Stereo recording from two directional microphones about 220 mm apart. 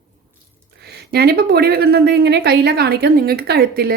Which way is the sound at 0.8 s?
45° right (ahead or behind).